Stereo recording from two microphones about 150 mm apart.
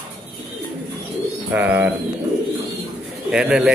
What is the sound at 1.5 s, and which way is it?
Speech, 10° right (ahead or behind).